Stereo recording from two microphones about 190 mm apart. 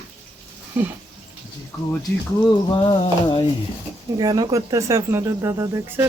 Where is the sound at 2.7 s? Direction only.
25° left (ahead or behind).